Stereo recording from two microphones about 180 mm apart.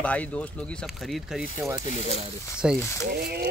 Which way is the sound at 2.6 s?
5° right (ahead or behind).